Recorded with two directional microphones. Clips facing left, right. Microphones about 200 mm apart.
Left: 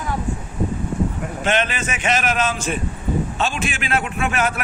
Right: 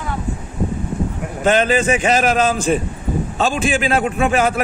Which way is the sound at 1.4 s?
35° right (ahead or behind).